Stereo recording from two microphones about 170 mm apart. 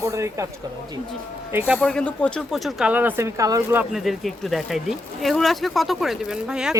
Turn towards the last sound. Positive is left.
turn(degrees=-5)  # may be behind; listen again after turning